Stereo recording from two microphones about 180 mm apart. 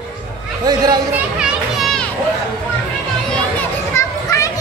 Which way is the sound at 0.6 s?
20° right (ahead or behind).